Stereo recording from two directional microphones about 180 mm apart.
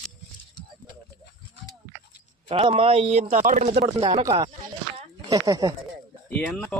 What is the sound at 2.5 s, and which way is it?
Speech, 30° right (ahead or behind).